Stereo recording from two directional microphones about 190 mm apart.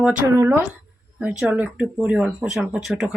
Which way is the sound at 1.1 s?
5° right (ahead or behind).